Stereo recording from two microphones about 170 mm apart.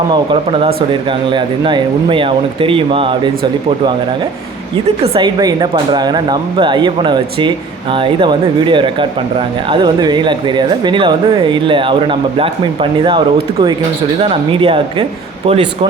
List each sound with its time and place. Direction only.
0.1 s speech: 30° right (ahead or behind)
5.1 s speech: 25° right (ahead or behind)